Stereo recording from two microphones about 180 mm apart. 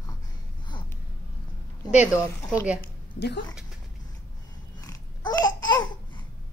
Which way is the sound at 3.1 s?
70° left (ahead or behind).